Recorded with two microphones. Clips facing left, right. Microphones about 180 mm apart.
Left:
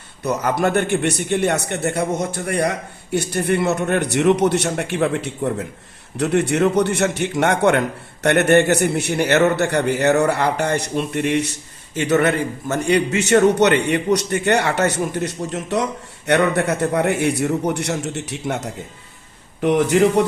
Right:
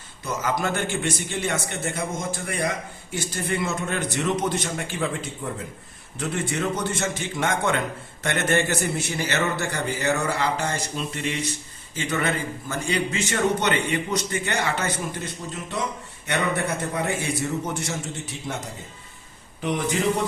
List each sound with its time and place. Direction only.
0.6 s a man's voice: 60° left (ahead or behind)
12.8 s a man's voice: 70° left (ahead or behind)